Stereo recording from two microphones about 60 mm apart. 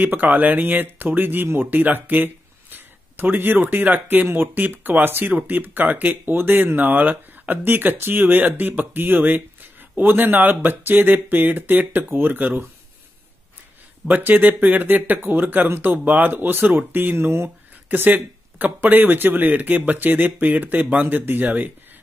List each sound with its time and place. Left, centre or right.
0.0 s speech: right
14.0 s speech: right